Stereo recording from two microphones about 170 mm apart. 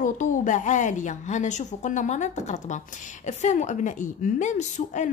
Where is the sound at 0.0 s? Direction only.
45° left (ahead or behind).